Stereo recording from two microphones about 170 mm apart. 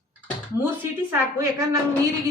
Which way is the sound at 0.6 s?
15° right (ahead or behind).